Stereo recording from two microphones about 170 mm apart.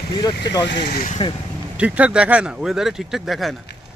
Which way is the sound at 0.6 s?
90° left.